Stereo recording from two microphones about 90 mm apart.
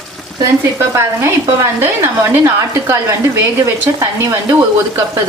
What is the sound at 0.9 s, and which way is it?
Speech, 35° right (ahead or behind).